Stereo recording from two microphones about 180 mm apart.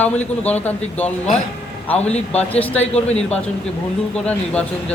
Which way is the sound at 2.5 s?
10° left (ahead or behind).